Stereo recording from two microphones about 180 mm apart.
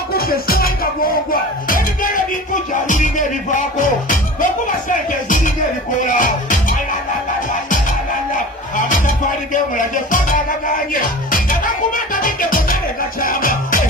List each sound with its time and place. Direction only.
0.1 s music: 55° left (ahead or behind)
4.4 s speech: 45° left (ahead or behind)
6.0 s music: 45° left (ahead or behind)
8.7 s music: 45° left (ahead or behind)